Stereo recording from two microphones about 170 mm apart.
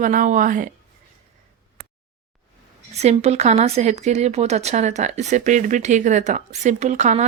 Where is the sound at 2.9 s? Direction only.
40° right (ahead or behind).